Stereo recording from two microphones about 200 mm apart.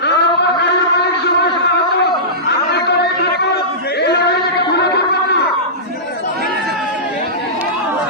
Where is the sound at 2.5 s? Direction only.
55° left (ahead or behind).